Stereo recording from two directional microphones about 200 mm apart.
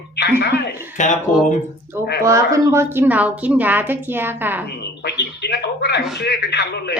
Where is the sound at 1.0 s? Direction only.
40° left (ahead or behind).